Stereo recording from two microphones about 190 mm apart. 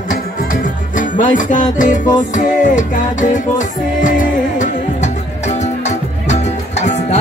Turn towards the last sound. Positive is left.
turn(degrees=35)  # may be behind; listen again after turning